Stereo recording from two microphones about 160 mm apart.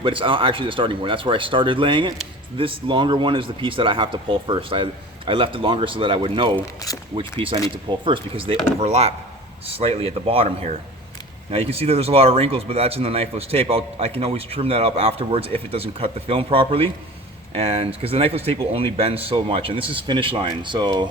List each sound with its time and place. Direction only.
0.0 s speech: 35° right (ahead or behind)
6.8 s speech: 20° left (ahead or behind)
7.2 s speech: 35° right (ahead or behind)